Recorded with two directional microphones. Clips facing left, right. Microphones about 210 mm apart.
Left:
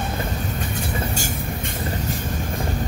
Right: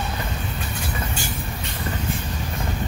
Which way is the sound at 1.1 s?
45° left (ahead or behind).